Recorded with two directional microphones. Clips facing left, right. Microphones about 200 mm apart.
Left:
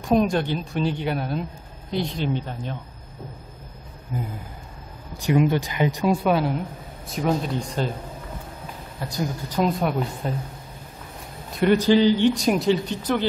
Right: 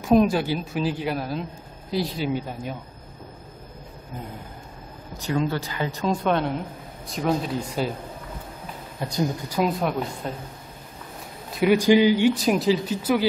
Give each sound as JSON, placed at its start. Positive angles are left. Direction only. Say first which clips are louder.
{"t": 0.0, "sound": "a man's voice", "louder": "right 2 dB", "side_deg": 0}
{"t": 5.2, "sound": "speech", "louder": "left 5 dB", "side_deg": 15}
{"t": 9.0, "sound": "a woman's voice", "louder": "right 2 dB", "side_deg": -20}
{"t": 9.5, "sound": "speech", "louder": "left 5 dB", "side_deg": 0}
{"t": 11.5, "sound": "a man's voice", "louder": "even", "side_deg": -5}